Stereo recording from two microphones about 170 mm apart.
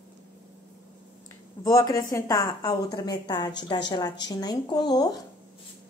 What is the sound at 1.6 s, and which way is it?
A woman's voice, 20° left (ahead or behind).